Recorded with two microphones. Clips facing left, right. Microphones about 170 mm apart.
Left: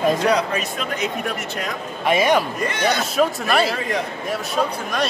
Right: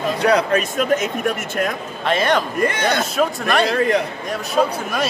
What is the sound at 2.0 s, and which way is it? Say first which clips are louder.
A man's voice: left 1 dB; 10° left (ahead or behind).